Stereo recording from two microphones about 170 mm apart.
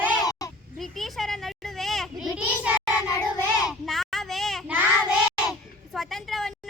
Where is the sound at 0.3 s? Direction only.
20° left (ahead or behind).